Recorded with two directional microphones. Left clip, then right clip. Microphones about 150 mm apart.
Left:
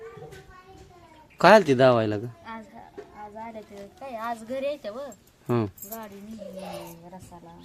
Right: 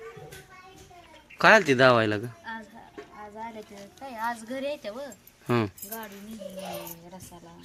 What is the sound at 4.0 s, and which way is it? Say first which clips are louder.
Speech: right 1 dB; 50° left (ahead or behind).